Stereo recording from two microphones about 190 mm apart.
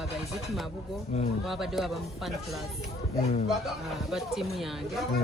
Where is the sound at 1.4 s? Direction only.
Centre (ahead or behind).